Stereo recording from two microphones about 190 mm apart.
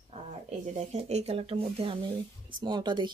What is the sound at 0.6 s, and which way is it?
Speech, 35° right (ahead or behind).